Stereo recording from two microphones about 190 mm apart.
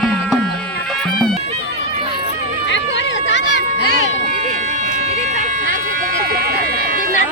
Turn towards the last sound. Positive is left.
turn(degrees=-55)  # may be behind; listen again after turning